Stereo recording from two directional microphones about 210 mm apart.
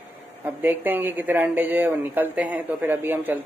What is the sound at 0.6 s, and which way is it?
Speech, 10° right (ahead or behind).